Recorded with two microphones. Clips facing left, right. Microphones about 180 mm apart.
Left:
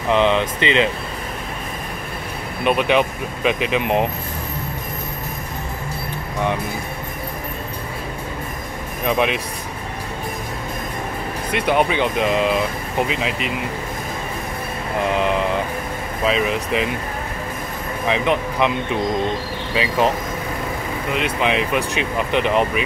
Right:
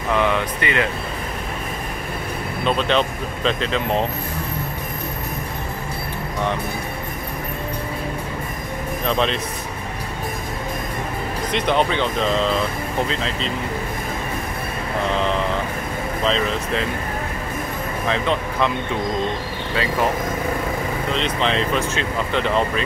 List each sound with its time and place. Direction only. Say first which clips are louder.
0.1 s speech: left 3 dB; 20° left (ahead or behind)
2.6 s speech: left 3 dB; 15° left (ahead or behind)
9.0 s speech: left 2 dB; 10° left (ahead or behind)
11.5 s speech: left 2 dB; 10° left (ahead or behind)
15.0 s speech: left 2 dB; 15° left (ahead or behind)
18.0 s speech: left 3 dB; 15° left (ahead or behind)
21.1 s speech: left 2 dB; 10° left (ahead or behind)